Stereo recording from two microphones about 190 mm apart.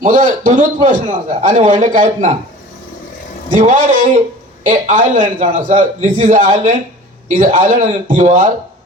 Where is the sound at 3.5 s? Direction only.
40° right (ahead or behind).